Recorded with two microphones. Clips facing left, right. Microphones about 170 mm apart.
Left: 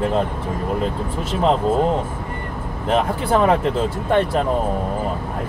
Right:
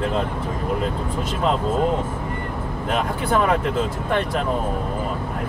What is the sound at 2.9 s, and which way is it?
Speech, 30° left (ahead or behind).